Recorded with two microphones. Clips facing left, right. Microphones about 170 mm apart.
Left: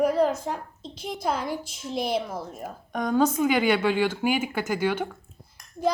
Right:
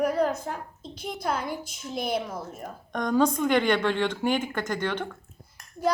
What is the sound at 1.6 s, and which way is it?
Speech, 55° right (ahead or behind).